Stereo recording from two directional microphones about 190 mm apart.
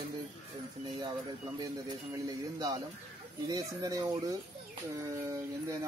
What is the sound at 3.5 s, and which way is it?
Speech, 20° right (ahead or behind).